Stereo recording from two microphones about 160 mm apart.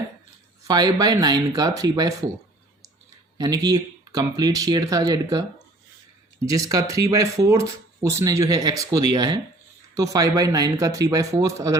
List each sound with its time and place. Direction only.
0.7 s speech: 25° right (ahead or behind)
3.3 s speech: 25° right (ahead or behind)